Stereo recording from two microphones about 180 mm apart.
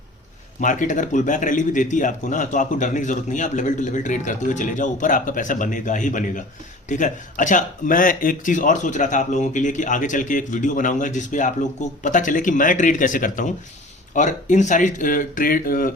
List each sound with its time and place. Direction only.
0.6 s speech: 45° left (ahead or behind)